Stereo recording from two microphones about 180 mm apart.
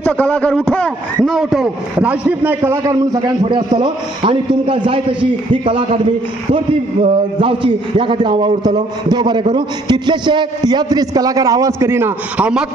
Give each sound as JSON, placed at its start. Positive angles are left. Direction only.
{"t": 0.0, "sound": "a man's voice", "side_deg": 10}
{"t": 7.3, "sound": "a man's voice", "side_deg": -30}